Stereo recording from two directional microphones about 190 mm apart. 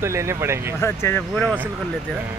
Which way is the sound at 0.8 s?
10° left (ahead or behind).